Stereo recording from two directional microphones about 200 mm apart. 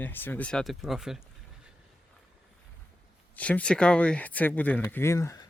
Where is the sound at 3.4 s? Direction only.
5° left (ahead or behind).